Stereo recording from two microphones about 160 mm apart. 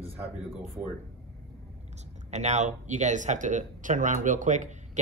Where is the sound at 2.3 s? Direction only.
45° right (ahead or behind).